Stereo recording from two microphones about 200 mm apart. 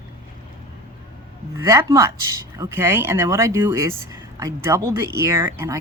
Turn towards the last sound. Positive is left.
turn(degrees=-15)  # may be behind; listen again after turning